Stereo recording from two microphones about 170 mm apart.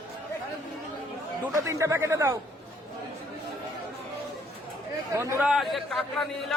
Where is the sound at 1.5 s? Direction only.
20° right (ahead or behind).